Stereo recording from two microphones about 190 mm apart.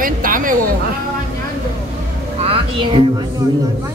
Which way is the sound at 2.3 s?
30° right (ahead or behind).